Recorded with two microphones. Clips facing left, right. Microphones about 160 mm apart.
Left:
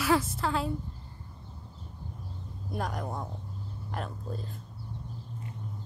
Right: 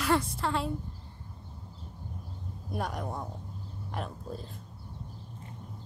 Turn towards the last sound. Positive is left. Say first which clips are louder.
# left 1 dB
turn(degrees=0)  # may be behind; listen again after turning